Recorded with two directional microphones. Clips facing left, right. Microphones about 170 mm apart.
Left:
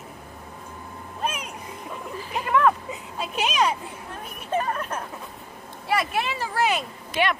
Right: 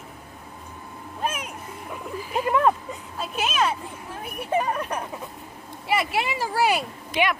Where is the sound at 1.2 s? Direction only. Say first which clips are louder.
Right 1 dB; centre (ahead or behind).